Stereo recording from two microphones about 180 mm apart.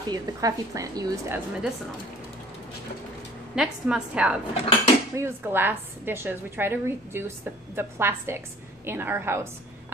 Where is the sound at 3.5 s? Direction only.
5° right (ahead or behind).